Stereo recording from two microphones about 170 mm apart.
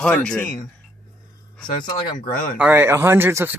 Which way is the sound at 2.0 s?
55° left (ahead or behind).